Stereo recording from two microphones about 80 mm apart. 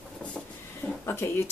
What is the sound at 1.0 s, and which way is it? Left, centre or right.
Speech, left.